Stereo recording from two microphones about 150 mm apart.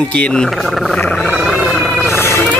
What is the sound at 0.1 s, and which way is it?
Speech, 5° left (ahead or behind).